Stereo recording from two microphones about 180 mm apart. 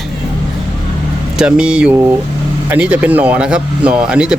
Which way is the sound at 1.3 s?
5° right (ahead or behind).